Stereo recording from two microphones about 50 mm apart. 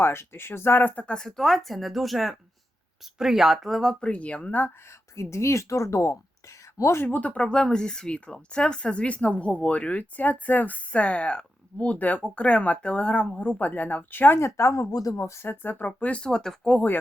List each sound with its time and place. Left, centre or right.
0.0 s speech: left
0.9 s speech: centre
4.0 s speech: left
5.1 s speech: left
7.2 s speech: left
7.4 s speech: centre; by 14.3 s left
14.3 s speech: left
15.1 s speech: left
15.4 s speech: left
16.0 s speech: left
16.2 s speech: centre